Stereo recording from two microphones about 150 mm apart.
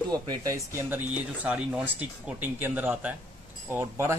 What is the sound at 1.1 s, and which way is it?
A man's voice, 10° right (ahead or behind).